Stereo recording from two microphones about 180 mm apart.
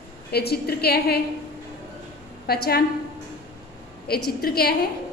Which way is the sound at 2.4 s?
60° left (ahead or behind).